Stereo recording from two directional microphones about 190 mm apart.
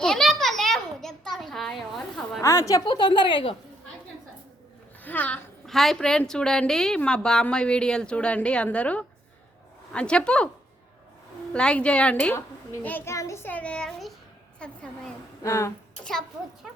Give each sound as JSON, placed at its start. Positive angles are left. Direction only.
{"t": 0.0, "sound": "a sound", "side_deg": 0}
{"t": 2.4, "sound": "a woman's voice", "side_deg": 15}
{"t": 5.0, "sound": "a woman's voice", "side_deg": 10}
{"t": 11.5, "sound": "a woman's voice", "side_deg": 5}
{"t": 15.4, "sound": "a child's voice", "side_deg": 15}